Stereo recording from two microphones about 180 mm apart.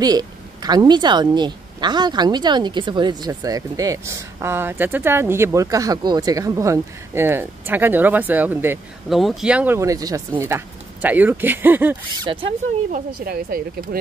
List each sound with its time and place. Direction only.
0.0 s speech: 20° right (ahead or behind)
9.1 s speech: centre (ahead or behind)
12.3 s speech: 30° right (ahead or behind)
12.9 s speech: 55° right (ahead or behind)